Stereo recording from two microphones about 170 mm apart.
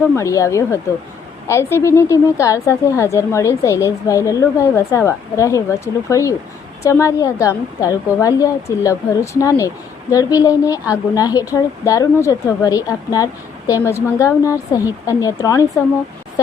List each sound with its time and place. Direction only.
0.2 s a woman's voice: 20° left (ahead or behind)